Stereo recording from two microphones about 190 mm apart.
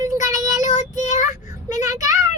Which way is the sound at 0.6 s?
40° left (ahead or behind).